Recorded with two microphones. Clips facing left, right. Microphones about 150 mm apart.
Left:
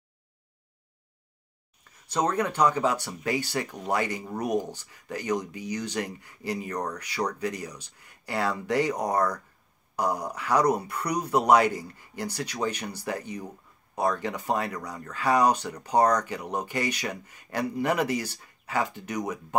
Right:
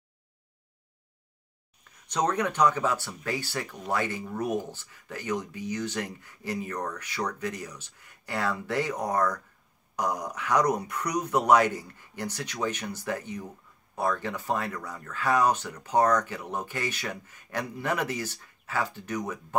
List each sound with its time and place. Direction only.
2.0 s speech: 5° left (ahead or behind)